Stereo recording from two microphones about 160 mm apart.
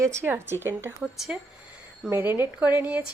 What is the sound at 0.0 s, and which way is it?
Speech, 15° right (ahead or behind).